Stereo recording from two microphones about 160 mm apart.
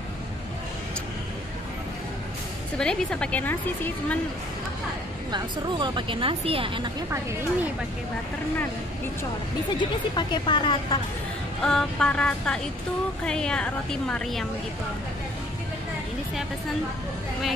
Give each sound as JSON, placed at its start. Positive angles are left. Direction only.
{"t": 2.8, "sound": "a woman's voice", "side_deg": 5}
{"t": 5.3, "sound": "a woman's voice", "side_deg": -30}
{"t": 7.1, "sound": "speech", "side_deg": -15}
{"t": 9.8, "sound": "speech", "side_deg": 30}
{"t": 11.6, "sound": "a woman's voice", "side_deg": 5}